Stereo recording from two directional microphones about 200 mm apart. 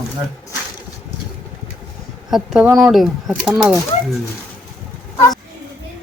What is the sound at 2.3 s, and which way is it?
Speech, centre (ahead or behind).